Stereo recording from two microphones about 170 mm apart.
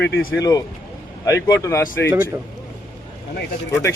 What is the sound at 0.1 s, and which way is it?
Speech, 90° left.